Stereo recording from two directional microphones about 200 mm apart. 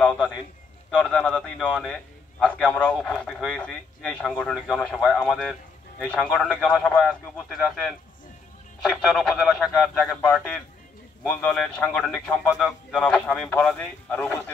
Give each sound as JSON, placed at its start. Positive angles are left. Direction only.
{"t": 0.0, "sound": "a man's voice", "side_deg": 5}
{"t": 8.9, "sound": "a man's voice", "side_deg": 0}